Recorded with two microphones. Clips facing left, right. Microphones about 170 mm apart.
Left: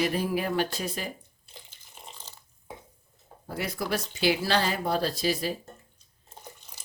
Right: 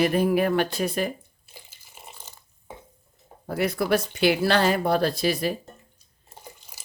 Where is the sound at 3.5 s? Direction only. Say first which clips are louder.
Right 8 dB; 60° right (ahead or behind).